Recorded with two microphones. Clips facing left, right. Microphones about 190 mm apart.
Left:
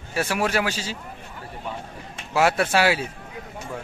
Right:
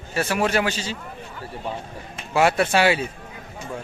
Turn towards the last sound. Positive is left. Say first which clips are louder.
# right 2 dB
turn(degrees=5)  # may be behind; listen again after turning